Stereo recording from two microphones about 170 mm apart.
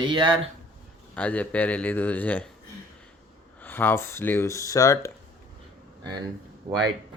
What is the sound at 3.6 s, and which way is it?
Speech, 10° left (ahead or behind).